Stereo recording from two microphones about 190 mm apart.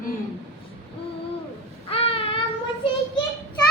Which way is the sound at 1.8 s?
30° left (ahead or behind).